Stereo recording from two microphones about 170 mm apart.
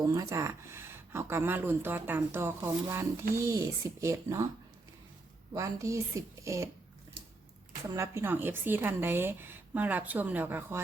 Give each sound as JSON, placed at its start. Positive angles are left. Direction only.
{"t": 0.0, "sound": "speech", "side_deg": -20}
{"t": 5.5, "sound": "speech", "side_deg": -20}
{"t": 7.9, "sound": "speech", "side_deg": -15}